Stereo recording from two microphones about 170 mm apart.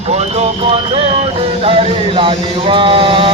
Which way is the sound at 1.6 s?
35° right (ahead or behind).